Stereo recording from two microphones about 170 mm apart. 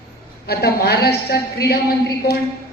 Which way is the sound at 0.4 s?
70° left (ahead or behind).